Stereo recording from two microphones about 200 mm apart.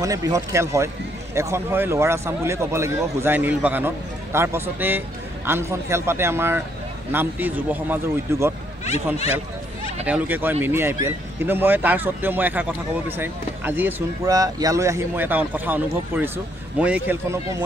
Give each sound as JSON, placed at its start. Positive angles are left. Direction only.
{"t": 0.0, "sound": "speech", "side_deg": -15}
{"t": 10.0, "sound": "speech", "side_deg": -10}